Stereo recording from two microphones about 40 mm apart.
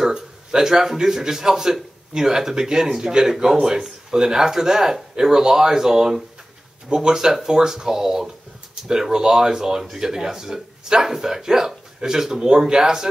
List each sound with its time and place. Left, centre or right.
0.1 s a man's voice: centre